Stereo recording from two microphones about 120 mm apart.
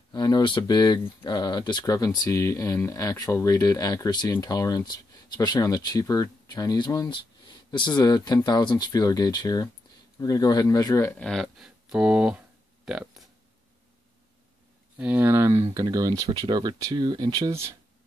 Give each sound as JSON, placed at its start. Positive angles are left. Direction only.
{"t": 0.1, "sound": "speech", "side_deg": 35}
{"t": 11.1, "sound": "a sound", "side_deg": 5}
{"t": 15.0, "sound": "speech", "side_deg": -15}